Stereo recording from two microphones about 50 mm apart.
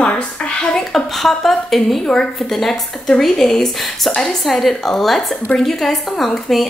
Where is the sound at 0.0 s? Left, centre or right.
Left.